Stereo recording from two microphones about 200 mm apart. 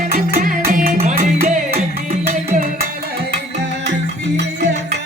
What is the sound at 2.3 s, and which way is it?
Music, 40° right (ahead or behind).